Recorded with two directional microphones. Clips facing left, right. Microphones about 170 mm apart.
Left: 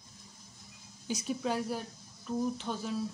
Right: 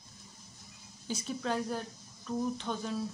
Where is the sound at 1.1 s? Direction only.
10° left (ahead or behind).